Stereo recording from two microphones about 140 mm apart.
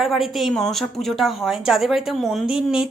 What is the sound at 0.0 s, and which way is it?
Speech, centre (ahead or behind).